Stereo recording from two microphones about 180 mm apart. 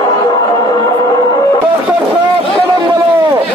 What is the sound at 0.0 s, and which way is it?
Music, 25° left (ahead or behind).